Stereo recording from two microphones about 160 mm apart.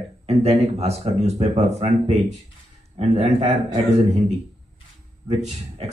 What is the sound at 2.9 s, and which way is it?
Speech, 40° right (ahead or behind).